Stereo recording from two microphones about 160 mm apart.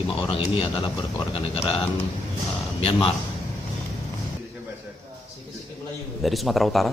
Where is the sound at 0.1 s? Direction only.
35° left (ahead or behind).